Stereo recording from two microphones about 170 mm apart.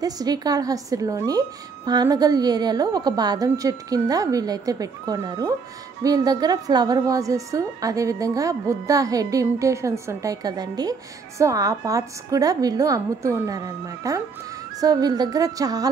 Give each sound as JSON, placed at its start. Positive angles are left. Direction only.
{"t": 0.0, "sound": "a woman's voice", "side_deg": -20}